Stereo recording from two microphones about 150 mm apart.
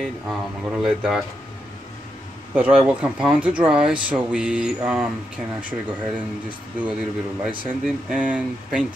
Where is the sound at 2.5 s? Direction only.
10° right (ahead or behind).